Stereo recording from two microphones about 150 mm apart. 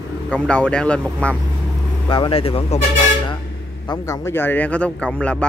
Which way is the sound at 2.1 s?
35° left (ahead or behind).